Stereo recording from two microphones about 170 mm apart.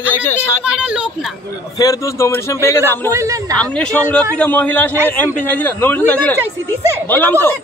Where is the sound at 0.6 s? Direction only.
5° right (ahead or behind).